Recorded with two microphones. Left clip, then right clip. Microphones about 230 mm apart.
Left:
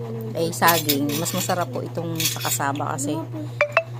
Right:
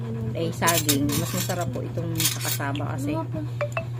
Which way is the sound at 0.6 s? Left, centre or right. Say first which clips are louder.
Left 4 dB; centre.